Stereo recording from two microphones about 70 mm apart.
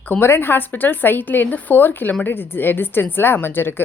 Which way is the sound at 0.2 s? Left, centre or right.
Left.